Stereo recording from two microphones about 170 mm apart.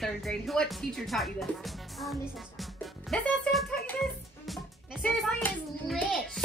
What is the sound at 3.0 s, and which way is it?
Speech, 5° left (ahead or behind).